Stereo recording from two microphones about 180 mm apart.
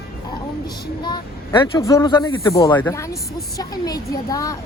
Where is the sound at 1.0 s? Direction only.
25° left (ahead or behind).